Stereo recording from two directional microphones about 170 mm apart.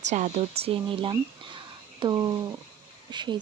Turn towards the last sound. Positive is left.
turn(degrees=-25)  # may be behind; listen again after turning